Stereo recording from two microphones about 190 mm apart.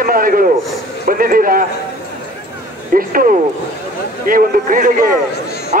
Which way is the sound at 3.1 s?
50° right (ahead or behind).